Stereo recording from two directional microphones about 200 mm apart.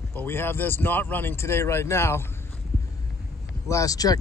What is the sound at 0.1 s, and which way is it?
Speech, 10° left (ahead or behind).